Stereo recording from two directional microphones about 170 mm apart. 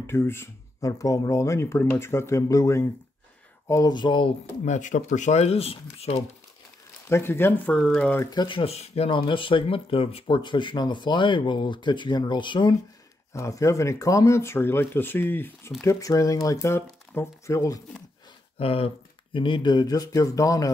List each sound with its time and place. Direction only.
0.0 s speech: 15° left (ahead or behind)
4.6 s speech: 45° left (ahead or behind)
7.1 s speech: 15° left (ahead or behind)
8.2 s speech: 25° left (ahead or behind)
18.6 s speech: 35° left (ahead or behind)